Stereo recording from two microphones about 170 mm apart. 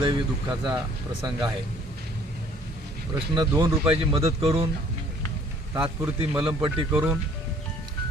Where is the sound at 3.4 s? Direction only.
20° right (ahead or behind).